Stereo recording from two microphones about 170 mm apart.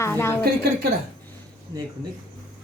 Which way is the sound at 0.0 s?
15° left (ahead or behind).